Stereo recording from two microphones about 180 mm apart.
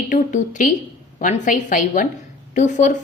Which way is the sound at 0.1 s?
45° left (ahead or behind).